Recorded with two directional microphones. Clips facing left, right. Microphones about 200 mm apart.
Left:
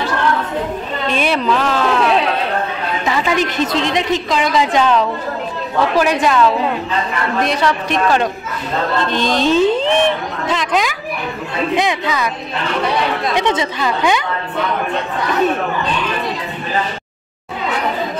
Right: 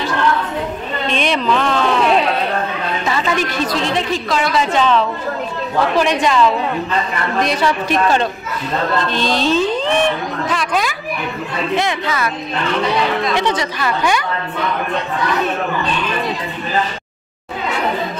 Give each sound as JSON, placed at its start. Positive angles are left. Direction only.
{"t": 1.1, "sound": "music", "side_deg": 5}
{"t": 3.1, "sound": "a woman's voice", "side_deg": 15}
{"t": 7.4, "sound": "a woman's voice", "side_deg": 0}
{"t": 9.4, "sound": "a sound", "side_deg": 20}
{"t": 10.5, "sound": "a woman's voice", "side_deg": 20}
{"t": 13.4, "sound": "a woman's voice", "side_deg": 20}